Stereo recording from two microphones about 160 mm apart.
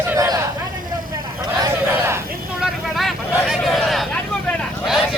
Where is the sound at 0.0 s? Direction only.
15° right (ahead or behind).